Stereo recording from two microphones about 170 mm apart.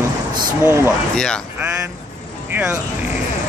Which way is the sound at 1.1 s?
5° left (ahead or behind).